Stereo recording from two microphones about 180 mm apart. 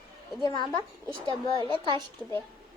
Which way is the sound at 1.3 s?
30° right (ahead or behind).